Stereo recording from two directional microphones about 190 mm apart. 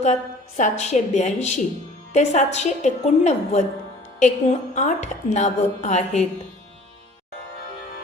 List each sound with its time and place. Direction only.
0.0 s a woman's voice: 40° left (ahead or behind)